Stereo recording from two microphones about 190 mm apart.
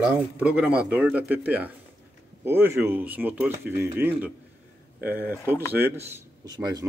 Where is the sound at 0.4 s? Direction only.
5° right (ahead or behind).